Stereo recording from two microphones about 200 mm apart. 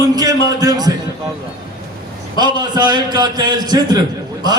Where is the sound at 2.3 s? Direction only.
20° right (ahead or behind).